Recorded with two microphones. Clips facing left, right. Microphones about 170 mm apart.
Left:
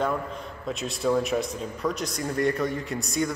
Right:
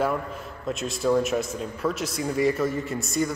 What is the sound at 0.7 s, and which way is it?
A man's voice, centre (ahead or behind).